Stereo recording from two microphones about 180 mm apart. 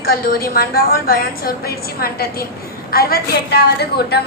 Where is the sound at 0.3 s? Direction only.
55° left (ahead or behind).